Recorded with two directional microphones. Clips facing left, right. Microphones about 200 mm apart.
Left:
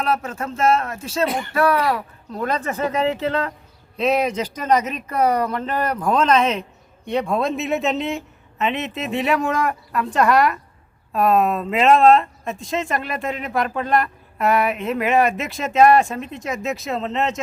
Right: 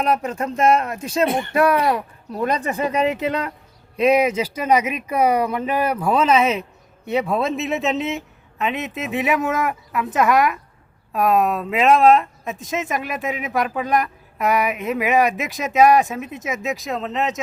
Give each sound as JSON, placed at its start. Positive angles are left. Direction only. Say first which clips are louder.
{"t": 0.0, "sound": "speech", "louder": "right 2 dB", "side_deg": -15}